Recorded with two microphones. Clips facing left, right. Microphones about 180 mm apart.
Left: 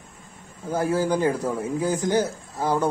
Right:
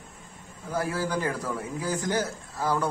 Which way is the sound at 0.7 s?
20° left (ahead or behind).